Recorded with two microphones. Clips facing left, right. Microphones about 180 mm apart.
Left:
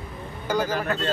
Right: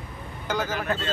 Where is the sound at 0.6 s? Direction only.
40° left (ahead or behind).